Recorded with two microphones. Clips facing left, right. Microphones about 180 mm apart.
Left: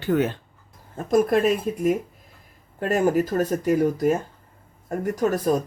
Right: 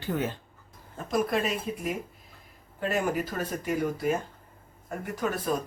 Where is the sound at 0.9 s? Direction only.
50° left (ahead or behind).